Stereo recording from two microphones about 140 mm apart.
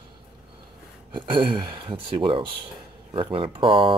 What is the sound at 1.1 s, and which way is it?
Speech, 35° right (ahead or behind).